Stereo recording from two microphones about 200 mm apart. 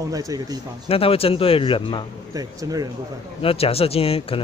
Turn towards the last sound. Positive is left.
turn(degrees=30)  # may be behind; listen again after turning